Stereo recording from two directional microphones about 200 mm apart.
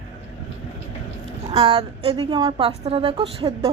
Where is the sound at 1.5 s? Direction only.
30° right (ahead or behind).